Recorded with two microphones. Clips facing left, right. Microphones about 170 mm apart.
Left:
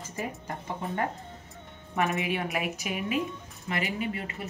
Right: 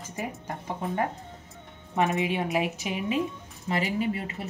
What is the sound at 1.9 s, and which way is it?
A woman's voice, 20° right (ahead or behind).